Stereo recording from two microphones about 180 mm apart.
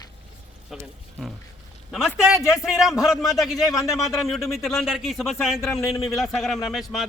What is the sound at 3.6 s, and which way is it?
Speech, 20° left (ahead or behind).